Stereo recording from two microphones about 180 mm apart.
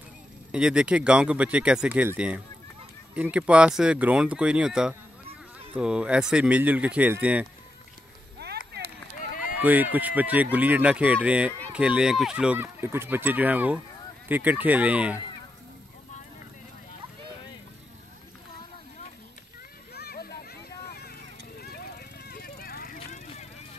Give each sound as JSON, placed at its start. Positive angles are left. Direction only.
{"t": 0.5, "sound": "speech", "side_deg": -5}
{"t": 8.4, "sound": "rowboat", "side_deg": -65}
{"t": 9.6, "sound": "speech", "side_deg": -10}
{"t": 19.9, "sound": "a sound", "side_deg": 60}
{"t": 22.9, "sound": "vehicle", "side_deg": 40}